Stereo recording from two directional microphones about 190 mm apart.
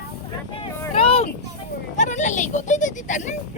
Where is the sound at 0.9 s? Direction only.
30° left (ahead or behind).